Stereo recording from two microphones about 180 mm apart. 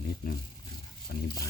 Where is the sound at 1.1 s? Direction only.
60° left (ahead or behind).